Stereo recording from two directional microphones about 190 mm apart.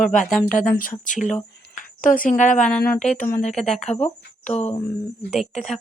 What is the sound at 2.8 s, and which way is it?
Speech, 45° left (ahead or behind).